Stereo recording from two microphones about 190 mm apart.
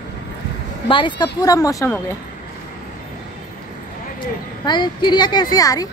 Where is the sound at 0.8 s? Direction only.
25° left (ahead or behind).